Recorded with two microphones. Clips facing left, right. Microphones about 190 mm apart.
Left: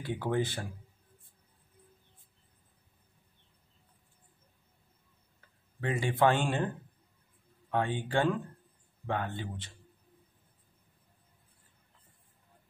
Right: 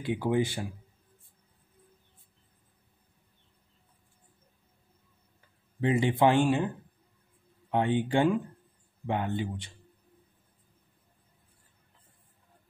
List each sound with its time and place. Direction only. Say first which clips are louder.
0.0 s speech: right 4 dB; 15° right (ahead or behind)
5.8 s speech: right 4 dB; 20° right (ahead or behind)
7.7 s speech: right 4 dB; 20° right (ahead or behind)